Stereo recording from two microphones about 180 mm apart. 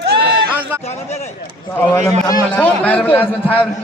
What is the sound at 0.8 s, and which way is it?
Speech, 35° left (ahead or behind).